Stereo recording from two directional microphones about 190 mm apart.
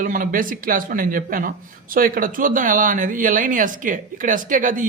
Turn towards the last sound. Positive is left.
turn(degrees=-45)  # may be behind; listen again after turning